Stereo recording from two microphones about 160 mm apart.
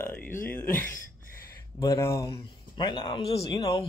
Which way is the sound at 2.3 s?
30° left (ahead or behind).